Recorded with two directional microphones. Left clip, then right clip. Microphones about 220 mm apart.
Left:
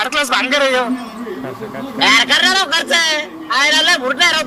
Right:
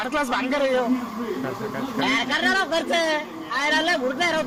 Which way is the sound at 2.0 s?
45° left (ahead or behind).